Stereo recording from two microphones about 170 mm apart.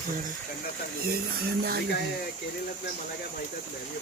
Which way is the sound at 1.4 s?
65° right (ahead or behind).